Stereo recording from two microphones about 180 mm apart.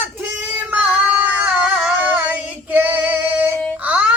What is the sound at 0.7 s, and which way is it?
Singing, 10° right (ahead or behind).